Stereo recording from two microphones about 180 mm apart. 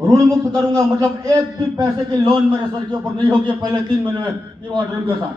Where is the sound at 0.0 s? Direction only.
20° right (ahead or behind).